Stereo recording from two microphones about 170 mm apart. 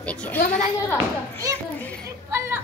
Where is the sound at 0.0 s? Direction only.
5° left (ahead or behind).